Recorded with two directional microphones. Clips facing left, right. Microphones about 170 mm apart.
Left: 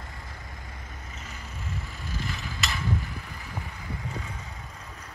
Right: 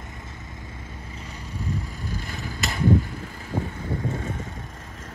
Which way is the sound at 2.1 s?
40° right (ahead or behind).